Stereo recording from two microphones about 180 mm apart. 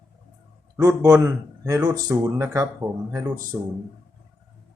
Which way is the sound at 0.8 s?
15° right (ahead or behind).